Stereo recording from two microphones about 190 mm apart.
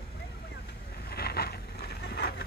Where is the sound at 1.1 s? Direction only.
55° left (ahead or behind).